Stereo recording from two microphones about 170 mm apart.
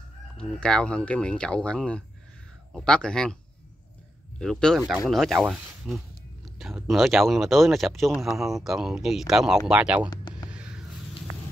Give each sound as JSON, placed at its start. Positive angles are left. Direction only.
{"t": 0.4, "sound": "speech", "side_deg": 5}
{"t": 4.4, "sound": "speech", "side_deg": 5}
{"t": 10.0, "sound": "a sound", "side_deg": 25}